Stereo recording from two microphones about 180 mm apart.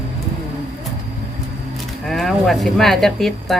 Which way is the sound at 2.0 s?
Centre (ahead or behind).